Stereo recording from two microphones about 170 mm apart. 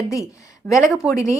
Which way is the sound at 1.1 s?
20° left (ahead or behind).